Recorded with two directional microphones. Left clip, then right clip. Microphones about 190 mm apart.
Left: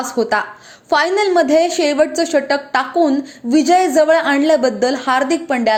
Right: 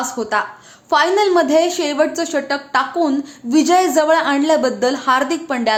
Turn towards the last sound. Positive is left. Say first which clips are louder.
# left 3 dB
turn(degrees=10)  # may be behind; listen again after turning